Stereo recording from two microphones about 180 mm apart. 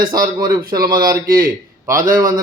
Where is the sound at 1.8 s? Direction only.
20° right (ahead or behind).